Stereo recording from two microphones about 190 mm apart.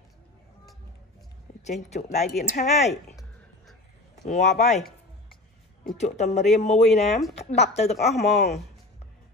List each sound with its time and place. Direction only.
1.6 s speech: 35° left (ahead or behind)
4.3 s speech: 35° left (ahead or behind)
5.9 s speech: 35° left (ahead or behind)